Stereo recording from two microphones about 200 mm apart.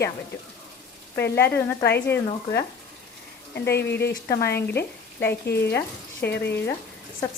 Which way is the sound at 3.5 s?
55° left (ahead or behind).